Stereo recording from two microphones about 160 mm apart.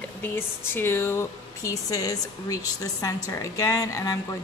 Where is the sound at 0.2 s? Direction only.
15° left (ahead or behind).